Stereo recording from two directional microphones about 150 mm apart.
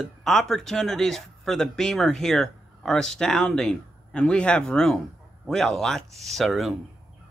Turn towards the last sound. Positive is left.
turn(degrees=0)  # may be behind; listen again after turning